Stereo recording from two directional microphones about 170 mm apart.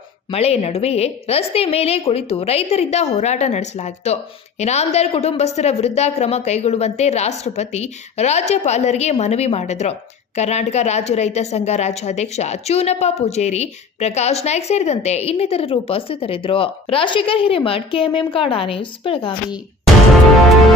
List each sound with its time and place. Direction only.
0.3 s a woman's voice: 35° left (ahead or behind)